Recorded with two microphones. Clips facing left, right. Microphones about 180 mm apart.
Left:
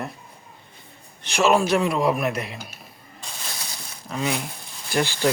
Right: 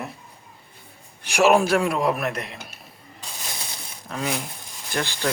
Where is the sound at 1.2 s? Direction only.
10° right (ahead or behind).